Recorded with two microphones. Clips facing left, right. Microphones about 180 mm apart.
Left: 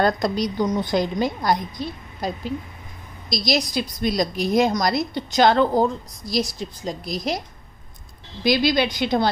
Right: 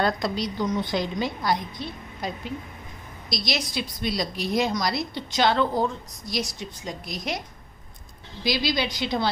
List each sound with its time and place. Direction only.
0.0 s a woman's voice: 45° left (ahead or behind)
8.5 s a woman's voice: 55° left (ahead or behind)